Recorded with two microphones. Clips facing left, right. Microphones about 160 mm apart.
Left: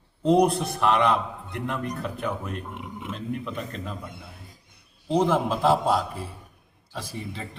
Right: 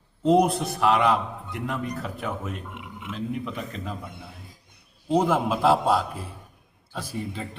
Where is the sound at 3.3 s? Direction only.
Centre (ahead or behind).